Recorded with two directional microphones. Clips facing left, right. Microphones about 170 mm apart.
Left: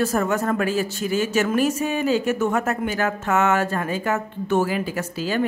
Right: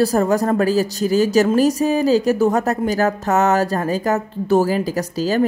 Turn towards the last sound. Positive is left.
turn(degrees=-40)  # may be behind; listen again after turning